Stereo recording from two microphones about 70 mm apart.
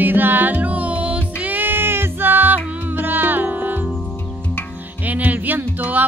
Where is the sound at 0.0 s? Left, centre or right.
Right.